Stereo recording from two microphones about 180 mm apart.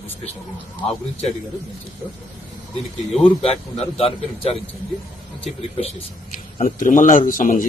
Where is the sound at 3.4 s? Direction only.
35° left (ahead or behind).